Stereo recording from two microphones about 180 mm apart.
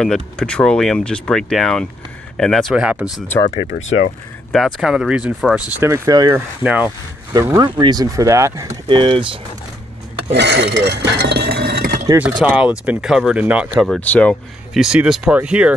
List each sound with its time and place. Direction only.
0.0 s speech: 5° left (ahead or behind)
4.5 s speech: centre (ahead or behind)
5.9 s speech: 20° right (ahead or behind)
6.6 s speech: 5° right (ahead or behind)
7.3 s speech: 20° right (ahead or behind)
8.8 s speech: 25° right (ahead or behind)
10.3 s speech: 75° right (ahead or behind)
12.2 s speech: 5° right (ahead or behind)
13.8 s speech: 5° left (ahead or behind)